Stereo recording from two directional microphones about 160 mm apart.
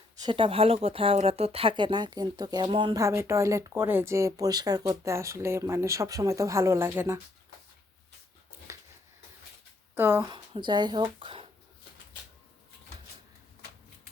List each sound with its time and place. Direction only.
0.2 s speech: 30° right (ahead or behind); by 7.2 s 15° right (ahead or behind)
8.7 s a sound: 20° right (ahead or behind)
9.9 s speech: 15° right (ahead or behind)
10.3 s speech: 30° right (ahead or behind)